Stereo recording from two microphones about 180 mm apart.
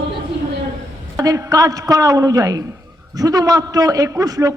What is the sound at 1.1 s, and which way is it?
A man's voice, 20° right (ahead or behind).